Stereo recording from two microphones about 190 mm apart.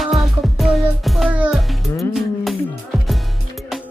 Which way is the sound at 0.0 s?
Centre (ahead or behind).